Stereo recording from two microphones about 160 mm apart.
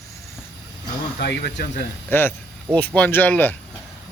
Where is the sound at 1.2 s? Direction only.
90° left.